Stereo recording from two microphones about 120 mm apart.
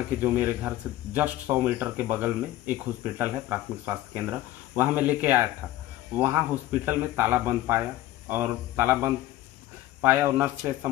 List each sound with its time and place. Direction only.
0.2 s speech: 15° right (ahead or behind)